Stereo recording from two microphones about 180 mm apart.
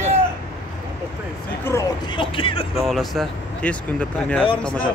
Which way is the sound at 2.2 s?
30° left (ahead or behind).